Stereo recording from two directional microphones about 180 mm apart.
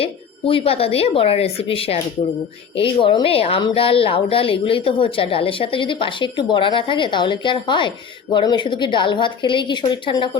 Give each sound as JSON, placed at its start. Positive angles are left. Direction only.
{"t": 0.0, "sound": "speech", "side_deg": 30}